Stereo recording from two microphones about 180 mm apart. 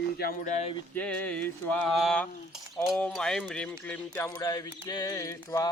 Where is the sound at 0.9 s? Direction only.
10° left (ahead or behind).